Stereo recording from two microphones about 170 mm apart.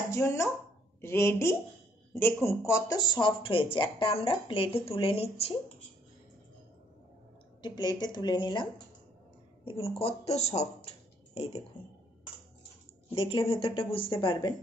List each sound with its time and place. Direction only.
0.1 s speech: 15° left (ahead or behind); by 5.5 s 35° left (ahead or behind)
7.6 s speech: 25° left (ahead or behind)
9.7 s speech: 35° left (ahead or behind)
13.1 s speech: 35° left (ahead or behind)